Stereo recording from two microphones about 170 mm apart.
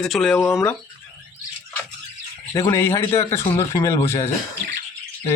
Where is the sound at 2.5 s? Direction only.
20° left (ahead or behind).